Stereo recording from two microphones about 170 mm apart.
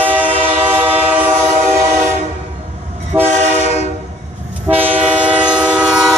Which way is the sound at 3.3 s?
45° right (ahead or behind).